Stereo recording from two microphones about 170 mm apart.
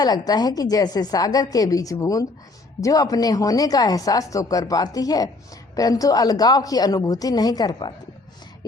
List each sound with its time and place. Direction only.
0.0 s a woman's voice: 25° left (ahead or behind)